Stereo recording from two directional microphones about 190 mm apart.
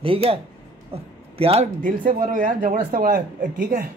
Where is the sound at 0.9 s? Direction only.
30° right (ahead or behind).